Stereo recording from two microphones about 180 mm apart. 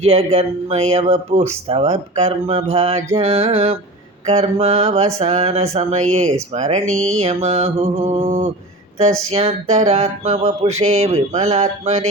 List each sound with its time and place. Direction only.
0.0 s mantra: 35° right (ahead or behind)